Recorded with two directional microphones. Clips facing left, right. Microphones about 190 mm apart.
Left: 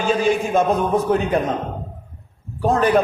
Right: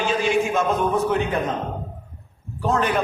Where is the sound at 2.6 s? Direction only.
40° left (ahead or behind).